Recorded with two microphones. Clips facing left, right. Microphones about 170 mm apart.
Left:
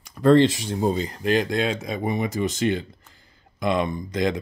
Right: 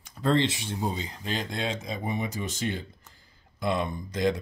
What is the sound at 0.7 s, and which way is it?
Speech, 60° left (ahead or behind).